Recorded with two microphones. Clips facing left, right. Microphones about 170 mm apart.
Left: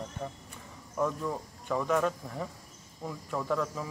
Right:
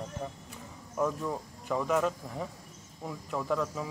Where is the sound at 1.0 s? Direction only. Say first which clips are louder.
Even; centre (ahead or behind).